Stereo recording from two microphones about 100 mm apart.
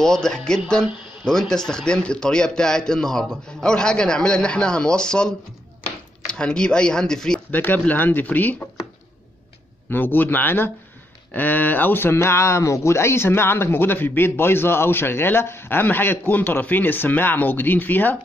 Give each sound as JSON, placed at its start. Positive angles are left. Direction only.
{"t": 0.0, "sound": "a man's voice", "side_deg": 5}
{"t": 7.5, "sound": "a man's voice", "side_deg": 20}
{"t": 9.8, "sound": "speech", "side_deg": 20}